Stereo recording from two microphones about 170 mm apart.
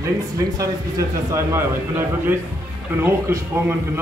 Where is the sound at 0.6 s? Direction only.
20° right (ahead or behind).